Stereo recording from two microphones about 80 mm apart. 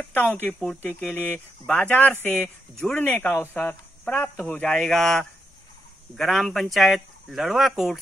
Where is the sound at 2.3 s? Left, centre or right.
Centre.